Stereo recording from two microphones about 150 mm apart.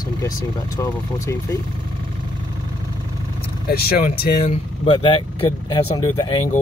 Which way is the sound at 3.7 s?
80° left.